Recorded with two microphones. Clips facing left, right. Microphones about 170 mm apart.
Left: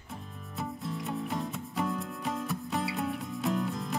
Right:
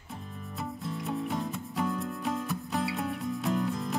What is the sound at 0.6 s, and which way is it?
Music, centre (ahead or behind).